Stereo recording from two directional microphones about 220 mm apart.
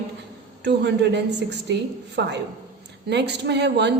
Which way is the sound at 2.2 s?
50° right (ahead or behind).